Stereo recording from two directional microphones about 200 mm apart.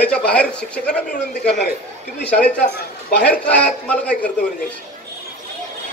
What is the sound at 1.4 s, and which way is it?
Speech, 55° left (ahead or behind).